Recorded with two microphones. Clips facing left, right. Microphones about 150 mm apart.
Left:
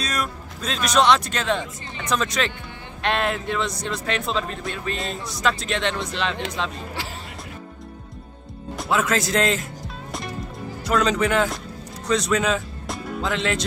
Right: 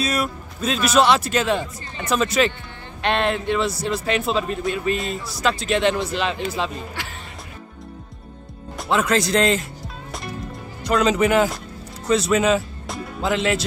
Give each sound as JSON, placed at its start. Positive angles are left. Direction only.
{"t": 0.0, "sound": "speech", "side_deg": -5}
{"t": 7.0, "sound": "music", "side_deg": 30}
{"t": 8.7, "sound": "speech", "side_deg": 0}
{"t": 10.8, "sound": "speech", "side_deg": 0}